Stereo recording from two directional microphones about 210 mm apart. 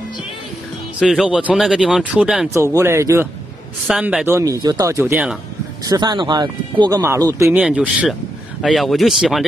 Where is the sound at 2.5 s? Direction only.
15° right (ahead or behind).